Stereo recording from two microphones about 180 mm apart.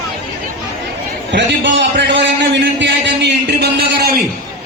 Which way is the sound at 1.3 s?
80° right.